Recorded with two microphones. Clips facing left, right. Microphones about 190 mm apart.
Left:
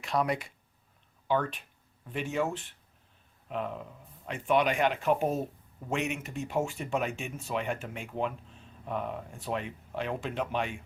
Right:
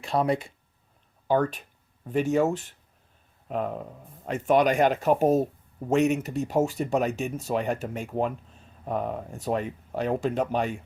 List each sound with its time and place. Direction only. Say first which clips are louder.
0.0 s speech: right 5 dB; 30° right (ahead or behind)
1.3 s speech: right 6 dB; 40° right (ahead or behind)